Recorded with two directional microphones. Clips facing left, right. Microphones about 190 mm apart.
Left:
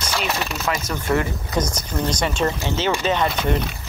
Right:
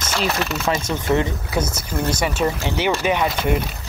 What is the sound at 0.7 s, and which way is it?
Speech, 25° right (ahead or behind).